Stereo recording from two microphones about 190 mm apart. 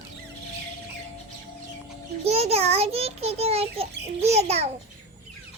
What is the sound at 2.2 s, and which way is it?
A child's voice, 35° right (ahead or behind).